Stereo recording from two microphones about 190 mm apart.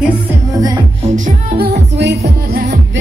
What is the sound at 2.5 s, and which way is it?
Music, 50° right (ahead or behind).